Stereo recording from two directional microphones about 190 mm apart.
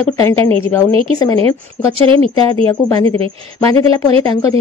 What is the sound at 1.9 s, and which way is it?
Speech, 30° right (ahead or behind).